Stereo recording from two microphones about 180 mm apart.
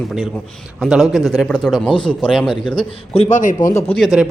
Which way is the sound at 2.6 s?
30° left (ahead or behind).